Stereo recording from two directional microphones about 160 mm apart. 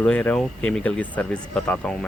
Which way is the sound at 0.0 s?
10° left (ahead or behind).